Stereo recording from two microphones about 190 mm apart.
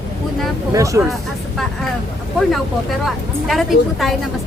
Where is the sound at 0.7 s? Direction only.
15° right (ahead or behind).